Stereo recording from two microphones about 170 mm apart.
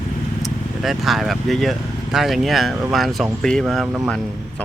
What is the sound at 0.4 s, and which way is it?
Speech, centre (ahead or behind).